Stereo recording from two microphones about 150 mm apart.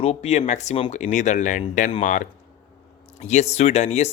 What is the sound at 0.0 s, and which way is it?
Speech, 45° left (ahead or behind).